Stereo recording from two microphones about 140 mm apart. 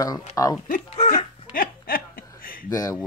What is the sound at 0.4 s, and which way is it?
Speech, 25° left (ahead or behind).